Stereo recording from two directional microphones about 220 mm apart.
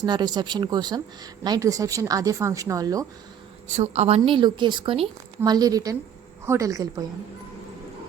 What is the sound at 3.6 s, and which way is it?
A woman's voice, 30° right (ahead or behind).